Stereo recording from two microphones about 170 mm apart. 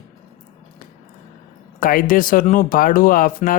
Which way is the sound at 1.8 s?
55° left (ahead or behind).